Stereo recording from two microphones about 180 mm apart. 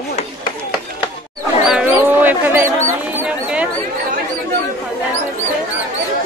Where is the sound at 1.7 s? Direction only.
10° right (ahead or behind).